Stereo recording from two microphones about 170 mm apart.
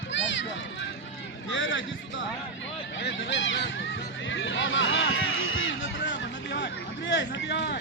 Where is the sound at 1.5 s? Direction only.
90° left.